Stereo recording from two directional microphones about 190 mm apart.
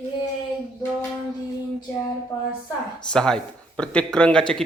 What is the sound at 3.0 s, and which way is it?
Speech, 5° left (ahead or behind).